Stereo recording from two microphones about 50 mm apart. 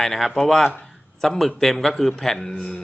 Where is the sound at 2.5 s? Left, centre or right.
Left.